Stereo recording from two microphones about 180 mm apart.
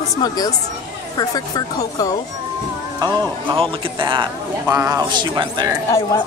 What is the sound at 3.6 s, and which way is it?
Speech, 25° right (ahead or behind).